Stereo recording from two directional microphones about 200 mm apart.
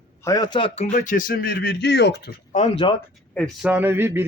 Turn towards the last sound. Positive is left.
turn(degrees=-10)  # may be behind; listen again after turning